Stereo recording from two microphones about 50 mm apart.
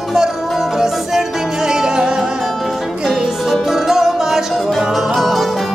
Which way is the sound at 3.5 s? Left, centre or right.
Centre.